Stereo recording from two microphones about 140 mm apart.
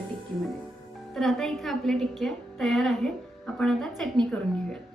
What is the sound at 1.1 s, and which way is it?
A woman's voice, centre (ahead or behind).